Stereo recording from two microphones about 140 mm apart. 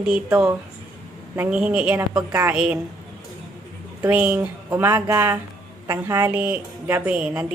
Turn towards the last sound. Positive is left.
turn(degrees=-10)  # may be behind; listen again after turning